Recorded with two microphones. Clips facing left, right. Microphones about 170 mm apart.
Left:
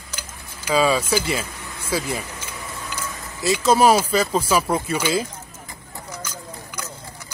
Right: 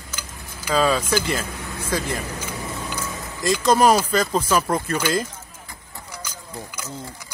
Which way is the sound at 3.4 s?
5° left (ahead or behind).